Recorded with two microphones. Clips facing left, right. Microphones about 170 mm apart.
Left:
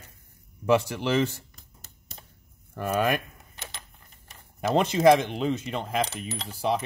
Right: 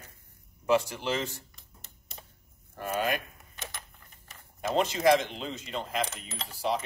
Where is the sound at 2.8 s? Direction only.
60° left (ahead or behind).